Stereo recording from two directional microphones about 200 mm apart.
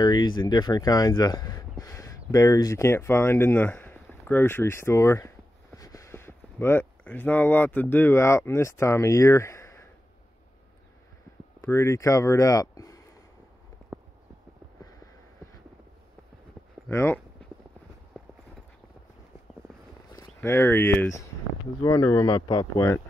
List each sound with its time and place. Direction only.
0.0 s speech: 20° left (ahead or behind)
11.6 s speech: 15° left (ahead or behind)
16.9 s speech: 10° left (ahead or behind)
20.3 s speech: 10° left (ahead or behind)